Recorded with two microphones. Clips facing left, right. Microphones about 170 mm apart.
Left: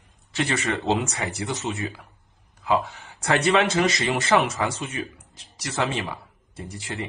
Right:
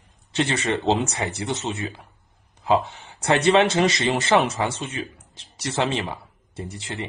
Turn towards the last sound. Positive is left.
turn(degrees=-25)  # may be behind; listen again after turning